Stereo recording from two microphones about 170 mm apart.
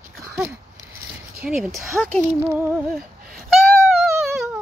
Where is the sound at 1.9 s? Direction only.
5° left (ahead or behind).